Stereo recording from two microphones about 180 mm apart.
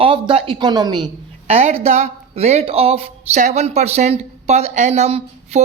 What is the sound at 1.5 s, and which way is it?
Speech, 35° right (ahead or behind).